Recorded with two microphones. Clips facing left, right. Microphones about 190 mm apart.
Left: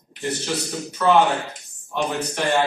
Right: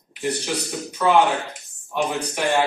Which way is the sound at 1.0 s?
10° right (ahead or behind).